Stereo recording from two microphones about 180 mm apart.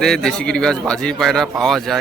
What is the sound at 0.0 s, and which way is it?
A man's voice, 5° left (ahead or behind).